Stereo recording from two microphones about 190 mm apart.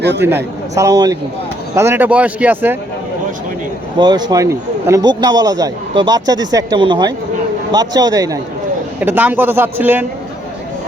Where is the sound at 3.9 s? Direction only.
20° right (ahead or behind).